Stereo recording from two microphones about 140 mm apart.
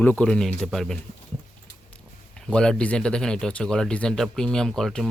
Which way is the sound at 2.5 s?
5° left (ahead or behind).